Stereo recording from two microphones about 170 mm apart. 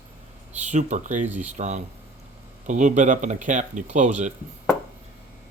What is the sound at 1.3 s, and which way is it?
Speech, 10° right (ahead or behind).